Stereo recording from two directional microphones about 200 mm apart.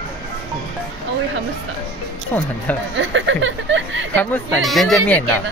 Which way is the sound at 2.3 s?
10° left (ahead or behind).